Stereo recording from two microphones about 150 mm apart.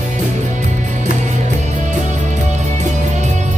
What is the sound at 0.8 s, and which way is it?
Music, 55° right (ahead or behind).